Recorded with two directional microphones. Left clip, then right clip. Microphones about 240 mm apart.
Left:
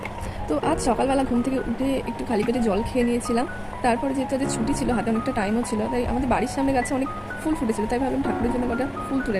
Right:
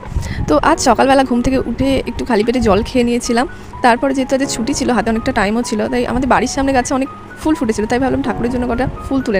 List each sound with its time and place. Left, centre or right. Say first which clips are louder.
0.4 s speech: right 11 dB; right